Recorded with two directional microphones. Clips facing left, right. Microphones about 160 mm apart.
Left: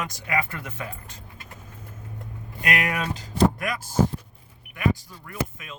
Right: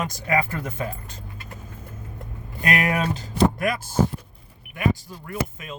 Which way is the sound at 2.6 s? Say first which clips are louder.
Right 4 dB; 30° right (ahead or behind).